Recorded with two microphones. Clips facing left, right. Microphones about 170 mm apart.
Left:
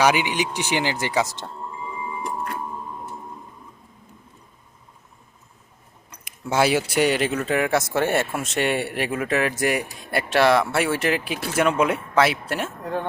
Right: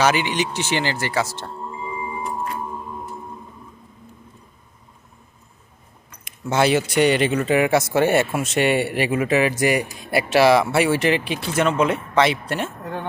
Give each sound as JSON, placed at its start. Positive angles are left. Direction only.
{"t": 0.0, "sound": "speech", "side_deg": 15}
{"t": 6.2, "sound": "speech", "side_deg": 10}